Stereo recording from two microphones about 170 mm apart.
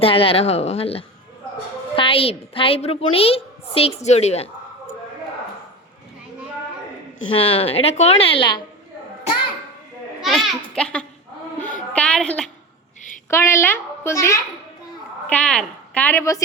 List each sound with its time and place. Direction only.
0.0 s a woman's voice: 35° left (ahead or behind)
7.3 s a woman's voice: 35° left (ahead or behind)
10.2 s a child's voice: centre (ahead or behind)
13.3 s a woman's voice: 15° left (ahead or behind)
15.3 s a woman's voice: 5° left (ahead or behind)